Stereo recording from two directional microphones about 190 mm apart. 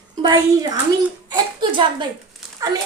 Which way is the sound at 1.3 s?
25° right (ahead or behind).